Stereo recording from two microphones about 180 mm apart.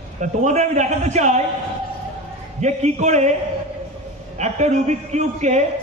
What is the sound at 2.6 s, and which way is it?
Speech, 40° right (ahead or behind).